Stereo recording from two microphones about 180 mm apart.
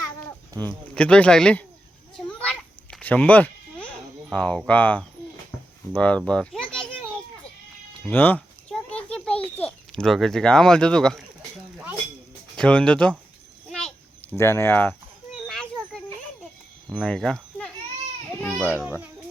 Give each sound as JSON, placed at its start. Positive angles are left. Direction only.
{"t": 0.5, "sound": "speech", "side_deg": -20}
{"t": 0.9, "sound": "speech", "side_deg": 5}
{"t": 2.1, "sound": "a sound", "side_deg": 5}
{"t": 4.3, "sound": "a child's voice", "side_deg": 5}
{"t": 8.0, "sound": "a child's voice", "side_deg": 10}
{"t": 12.5, "sound": "speech", "side_deg": 5}
{"t": 13.7, "sound": "a sound", "side_deg": 5}
{"t": 14.3, "sound": "speech", "side_deg": 15}
{"t": 16.9, "sound": "speech", "side_deg": 5}
{"t": 18.9, "sound": "speech", "side_deg": -10}